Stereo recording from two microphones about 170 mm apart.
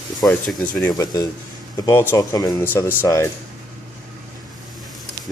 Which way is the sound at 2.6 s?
10° left (ahead or behind).